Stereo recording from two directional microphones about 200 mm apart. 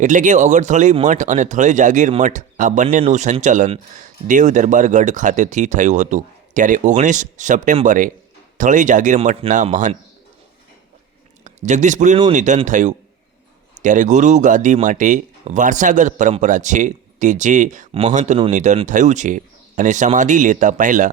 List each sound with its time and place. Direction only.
0.0 s a man's voice: 40° right (ahead or behind)
11.4 s a man's voice: 35° right (ahead or behind)